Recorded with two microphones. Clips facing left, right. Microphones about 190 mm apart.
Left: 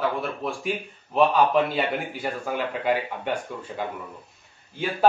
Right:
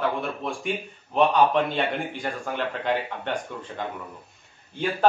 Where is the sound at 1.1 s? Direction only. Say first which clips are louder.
Even; 5° left (ahead or behind).